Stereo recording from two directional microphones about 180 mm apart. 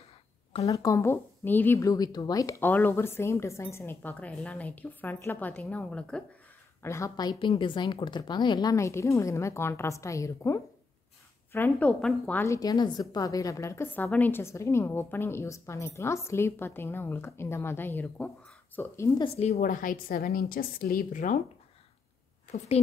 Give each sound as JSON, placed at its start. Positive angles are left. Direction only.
{"t": 0.7, "sound": "a woman's voice", "side_deg": 20}
{"t": 6.8, "sound": "a woman's voice", "side_deg": 15}
{"t": 19.2, "sound": "a woman's voice", "side_deg": 35}